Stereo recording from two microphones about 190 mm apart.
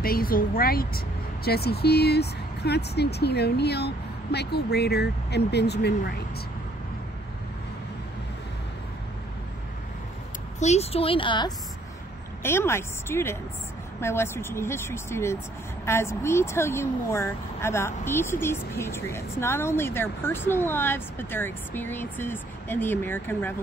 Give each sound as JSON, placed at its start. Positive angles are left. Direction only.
{"t": 0.0, "sound": "speech", "side_deg": 50}
{"t": 10.6, "sound": "speech", "side_deg": 35}
{"t": 12.4, "sound": "a woman's voice", "side_deg": 15}